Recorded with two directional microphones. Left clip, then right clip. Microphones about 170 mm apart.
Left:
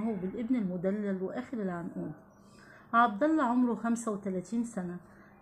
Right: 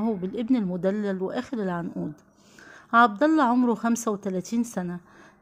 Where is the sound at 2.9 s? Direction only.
35° right (ahead or behind).